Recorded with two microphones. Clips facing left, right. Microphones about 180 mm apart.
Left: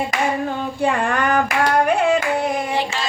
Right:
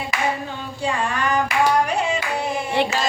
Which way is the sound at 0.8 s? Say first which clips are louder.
Left 3 dB; 60° left (ahead or behind).